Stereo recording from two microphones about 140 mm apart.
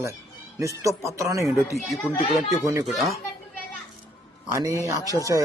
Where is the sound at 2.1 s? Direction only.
45° left (ahead or behind).